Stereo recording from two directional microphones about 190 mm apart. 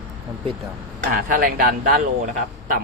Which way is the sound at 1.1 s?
45° right (ahead or behind).